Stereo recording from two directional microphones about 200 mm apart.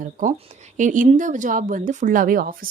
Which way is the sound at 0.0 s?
40° right (ahead or behind).